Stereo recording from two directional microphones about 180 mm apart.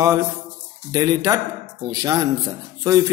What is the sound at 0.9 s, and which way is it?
A man's voice, 20° right (ahead or behind).